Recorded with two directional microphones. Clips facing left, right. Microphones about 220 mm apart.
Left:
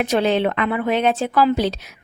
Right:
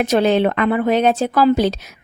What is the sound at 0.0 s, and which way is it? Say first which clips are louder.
Speech: right 3 dB; 45° right (ahead or behind).